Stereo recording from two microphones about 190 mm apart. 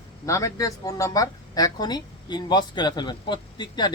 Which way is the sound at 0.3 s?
15° left (ahead or behind).